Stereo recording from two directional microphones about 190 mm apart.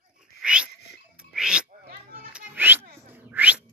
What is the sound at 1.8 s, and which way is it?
Children playing, 50° right (ahead or behind).